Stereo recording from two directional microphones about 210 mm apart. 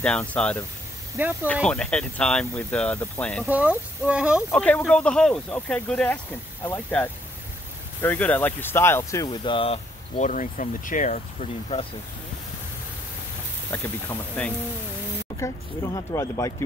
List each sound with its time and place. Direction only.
0.0 s speech: 5° left (ahead or behind)
1.1 s speech: 10° right (ahead or behind)
1.5 s speech: 5° left (ahead or behind)
3.4 s speech: 5° right (ahead or behind)
4.4 s speech: 10° left (ahead or behind); by 11.8 s 35° left (ahead or behind)
13.7 s speech: 10° left (ahead or behind)